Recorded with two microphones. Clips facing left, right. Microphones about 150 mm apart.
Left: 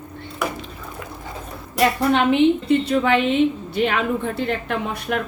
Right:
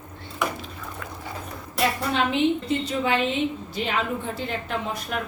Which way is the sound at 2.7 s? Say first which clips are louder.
Left 7 dB; 65° left (ahead or behind).